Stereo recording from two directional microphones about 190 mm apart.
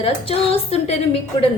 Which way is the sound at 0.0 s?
30° left (ahead or behind).